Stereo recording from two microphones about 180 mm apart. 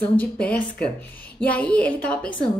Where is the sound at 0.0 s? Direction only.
10° left (ahead or behind).